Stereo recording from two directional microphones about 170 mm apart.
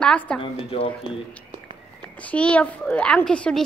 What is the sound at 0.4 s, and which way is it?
Speech, 30° left (ahead or behind).